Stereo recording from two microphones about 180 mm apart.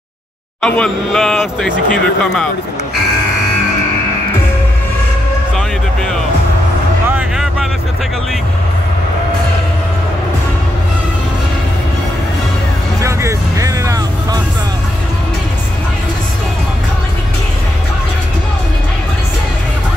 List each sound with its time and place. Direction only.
0.6 s speech: 5° left (ahead or behind)
7.1 s music: 5° right (ahead or behind)
13.0 s vehicle: 15° right (ahead or behind)